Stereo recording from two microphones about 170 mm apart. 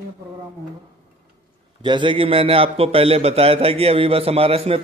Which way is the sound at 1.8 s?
30° right (ahead or behind).